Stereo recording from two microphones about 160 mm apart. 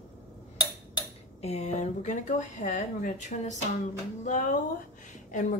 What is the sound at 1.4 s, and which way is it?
Speech, 45° left (ahead or behind).